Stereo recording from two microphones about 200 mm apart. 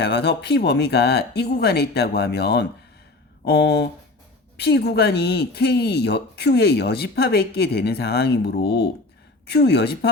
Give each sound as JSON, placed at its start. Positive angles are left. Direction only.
{"t": 0.0, "sound": "speech", "side_deg": 55}